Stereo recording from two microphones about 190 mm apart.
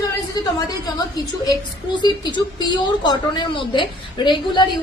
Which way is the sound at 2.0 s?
25° left (ahead or behind).